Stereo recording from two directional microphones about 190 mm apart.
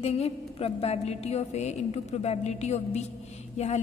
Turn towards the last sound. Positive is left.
turn(degrees=35)  # may be behind; listen again after turning